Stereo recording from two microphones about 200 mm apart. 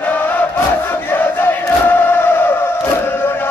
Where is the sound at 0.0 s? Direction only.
10° left (ahead or behind).